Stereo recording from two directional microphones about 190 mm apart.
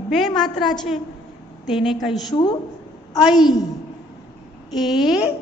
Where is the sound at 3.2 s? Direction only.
Centre (ahead or behind).